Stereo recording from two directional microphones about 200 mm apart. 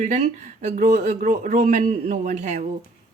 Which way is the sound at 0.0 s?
35° right (ahead or behind).